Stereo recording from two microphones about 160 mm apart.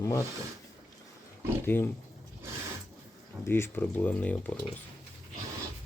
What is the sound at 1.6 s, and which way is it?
Speech, 15° left (ahead or behind).